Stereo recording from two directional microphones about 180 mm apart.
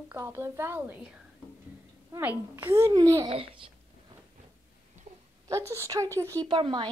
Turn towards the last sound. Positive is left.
turn(degrees=-25)  # may be behind; listen again after turning